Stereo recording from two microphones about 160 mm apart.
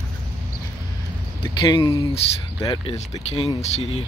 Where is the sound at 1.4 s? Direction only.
30° left (ahead or behind).